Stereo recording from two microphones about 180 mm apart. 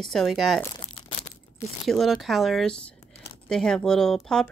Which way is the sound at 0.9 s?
30° left (ahead or behind).